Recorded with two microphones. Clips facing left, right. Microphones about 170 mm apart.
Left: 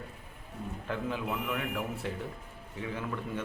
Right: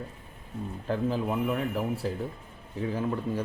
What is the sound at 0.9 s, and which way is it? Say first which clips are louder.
Speech: right 6 dB; 35° right (ahead or behind).